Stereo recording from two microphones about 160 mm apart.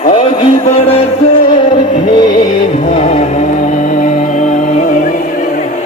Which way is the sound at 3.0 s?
40° left (ahead or behind).